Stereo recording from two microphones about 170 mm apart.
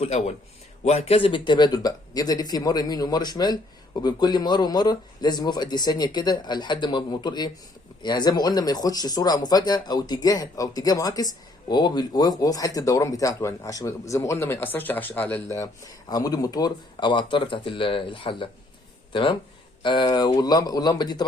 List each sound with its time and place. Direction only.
0.0 s a man's voice: 40° left (ahead or behind)